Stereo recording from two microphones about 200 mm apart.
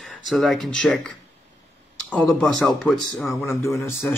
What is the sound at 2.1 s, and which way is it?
Speech, 5° left (ahead or behind).